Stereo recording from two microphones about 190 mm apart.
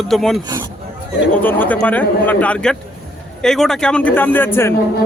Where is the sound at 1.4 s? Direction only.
10° left (ahead or behind).